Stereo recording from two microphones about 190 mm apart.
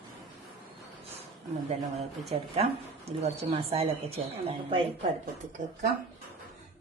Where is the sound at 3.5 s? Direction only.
30° right (ahead or behind).